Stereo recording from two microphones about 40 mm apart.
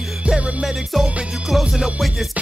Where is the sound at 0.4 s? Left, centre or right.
Right.